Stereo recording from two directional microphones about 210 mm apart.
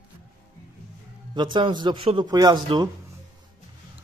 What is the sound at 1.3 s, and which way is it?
A man's voice, 20° right (ahead or behind).